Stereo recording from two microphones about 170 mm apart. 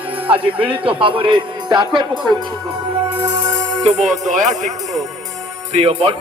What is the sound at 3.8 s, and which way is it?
Speech, 40° right (ahead or behind).